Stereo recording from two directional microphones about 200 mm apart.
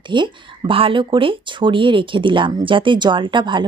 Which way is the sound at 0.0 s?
25° right (ahead or behind).